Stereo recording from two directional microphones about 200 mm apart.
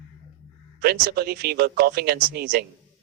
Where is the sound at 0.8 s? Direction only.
50° right (ahead or behind).